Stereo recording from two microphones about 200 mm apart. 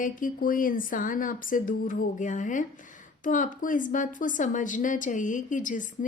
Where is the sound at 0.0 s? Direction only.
45° left (ahead or behind).